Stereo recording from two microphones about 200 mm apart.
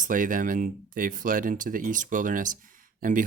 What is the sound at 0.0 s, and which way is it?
Speech, 40° right (ahead or behind).